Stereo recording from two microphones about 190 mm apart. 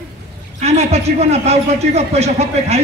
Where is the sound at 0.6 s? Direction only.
35° right (ahead or behind).